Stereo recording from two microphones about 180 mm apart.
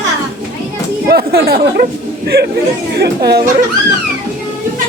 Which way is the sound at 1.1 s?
60° right (ahead or behind).